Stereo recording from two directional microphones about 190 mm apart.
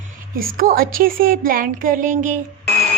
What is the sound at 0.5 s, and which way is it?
Speech, 50° right (ahead or behind).